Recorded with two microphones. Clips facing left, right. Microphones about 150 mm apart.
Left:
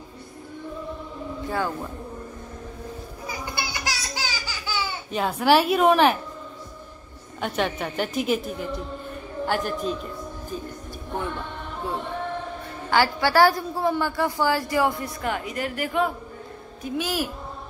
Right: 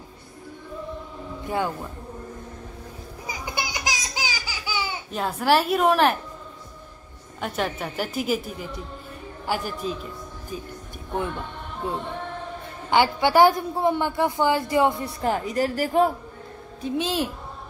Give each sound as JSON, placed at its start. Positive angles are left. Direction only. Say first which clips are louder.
{"t": 3.3, "sound": "a sound", "louder": "right 1 dB", "side_deg": -15}
{"t": 5.1, "sound": "a woman's voice", "louder": "left 2 dB", "side_deg": 0}
{"t": 7.3, "sound": "a woman's voice", "louder": "left 2 dB", "side_deg": 0}
{"t": 11.8, "sound": "a woman's voice", "louder": "left 1 dB", "side_deg": -20}
{"t": 16.8, "sound": "a woman's voice", "louder": "right 2 dB", "side_deg": -25}